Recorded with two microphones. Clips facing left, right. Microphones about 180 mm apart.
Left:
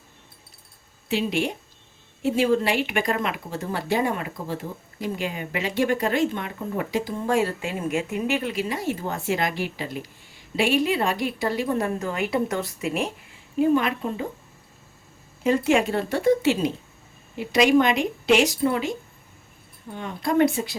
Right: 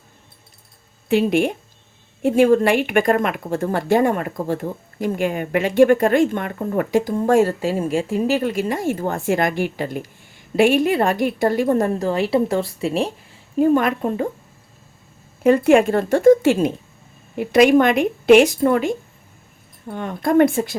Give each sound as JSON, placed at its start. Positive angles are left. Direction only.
{"t": 1.0, "sound": "a woman's voice", "side_deg": -55}
{"t": 13.6, "sound": "a woman's voice", "side_deg": -50}
{"t": 15.4, "sound": "a woman's voice", "side_deg": -55}